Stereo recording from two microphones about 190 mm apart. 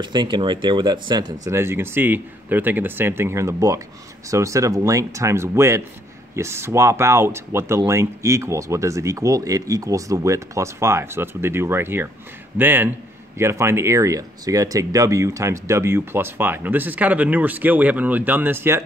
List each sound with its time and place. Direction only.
0.0 s speech: 25° right (ahead or behind)